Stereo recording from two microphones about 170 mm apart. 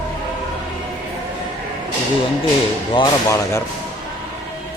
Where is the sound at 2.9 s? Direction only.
20° left (ahead or behind).